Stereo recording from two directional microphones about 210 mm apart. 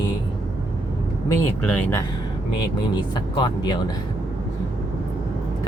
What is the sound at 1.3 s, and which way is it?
Speech, 10° left (ahead or behind).